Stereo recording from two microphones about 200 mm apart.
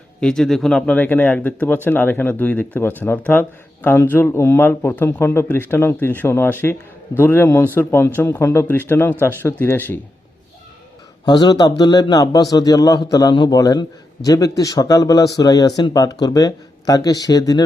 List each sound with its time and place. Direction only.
0.2 s speech: 5° left (ahead or behind)
11.3 s a man's voice: 20° left (ahead or behind)